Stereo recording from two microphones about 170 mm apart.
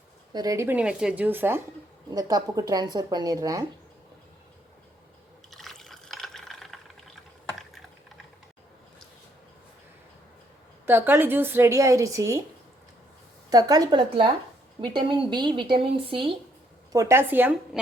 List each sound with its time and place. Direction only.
0.3 s a woman's voice: 20° right (ahead or behind)
5.5 s fill: centre (ahead or behind)
10.8 s a woman's voice: 15° right (ahead or behind)
13.5 s speech: 20° right (ahead or behind)
16.9 s a woman's voice: 15° right (ahead or behind)